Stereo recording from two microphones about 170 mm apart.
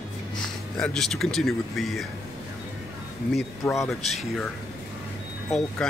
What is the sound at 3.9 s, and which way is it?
Speech, centre (ahead or behind).